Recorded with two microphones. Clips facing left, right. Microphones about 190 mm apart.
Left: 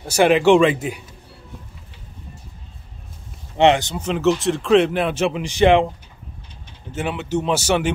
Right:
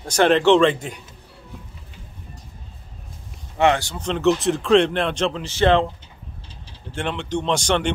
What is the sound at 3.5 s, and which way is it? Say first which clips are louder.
Speech: left 3 dB; 20° left (ahead or behind).